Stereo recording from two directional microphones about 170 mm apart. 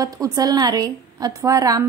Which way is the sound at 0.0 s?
20° right (ahead or behind).